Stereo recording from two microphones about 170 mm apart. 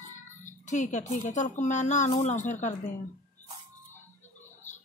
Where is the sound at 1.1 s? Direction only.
45° left (ahead or behind).